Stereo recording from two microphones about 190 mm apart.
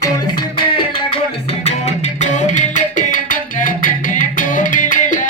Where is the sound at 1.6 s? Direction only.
40° left (ahead or behind).